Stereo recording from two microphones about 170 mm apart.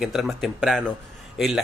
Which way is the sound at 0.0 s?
Centre (ahead or behind).